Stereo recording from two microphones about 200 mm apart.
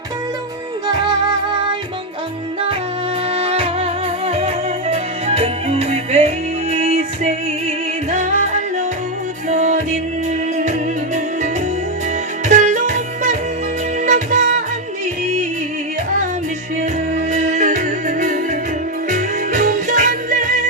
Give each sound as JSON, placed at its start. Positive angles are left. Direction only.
{"t": 3.3, "sound": "music", "side_deg": -30}
{"t": 9.5, "sound": "music", "side_deg": -35}
{"t": 12.5, "sound": "music", "side_deg": -40}
{"t": 17.2, "sound": "music", "side_deg": -35}